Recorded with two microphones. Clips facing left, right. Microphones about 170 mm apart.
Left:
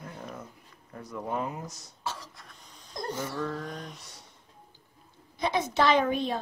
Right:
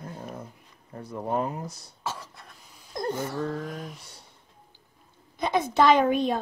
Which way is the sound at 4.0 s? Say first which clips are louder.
Even; 30° right (ahead or behind).